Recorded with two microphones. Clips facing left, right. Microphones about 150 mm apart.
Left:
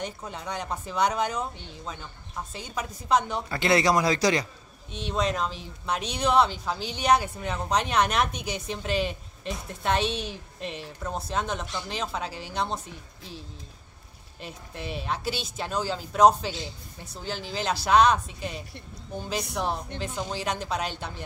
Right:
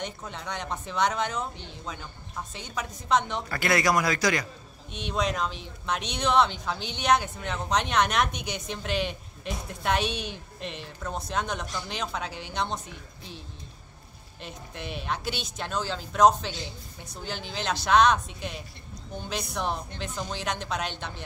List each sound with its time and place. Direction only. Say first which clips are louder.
0.0 s speech: left 1 dB; 5° left (ahead or behind)
3.4 s speech: left 2 dB; 25° left (ahead or behind)
5.0 s speech: left 1 dB; centre (ahead or behind)
14.4 s speech: left 1 dB; centre (ahead or behind)